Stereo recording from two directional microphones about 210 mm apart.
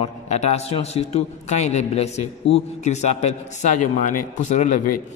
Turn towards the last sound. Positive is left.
turn(degrees=35)  # may be behind; listen again after turning